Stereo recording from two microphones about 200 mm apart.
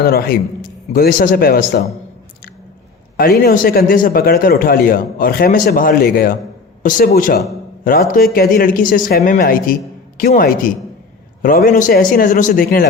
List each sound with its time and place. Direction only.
0.0 s a man's voice: 50° left (ahead or behind)
3.2 s a man's voice: 45° left (ahead or behind)